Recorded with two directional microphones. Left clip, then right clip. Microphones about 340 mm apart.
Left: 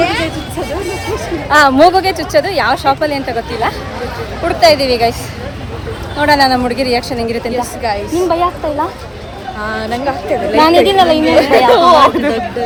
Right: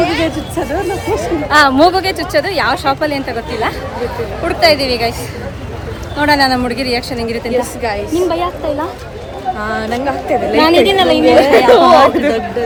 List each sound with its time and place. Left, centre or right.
0.0 s music: centre
1.5 s a woman's voice: centre
6.1 s a woman's voice: centre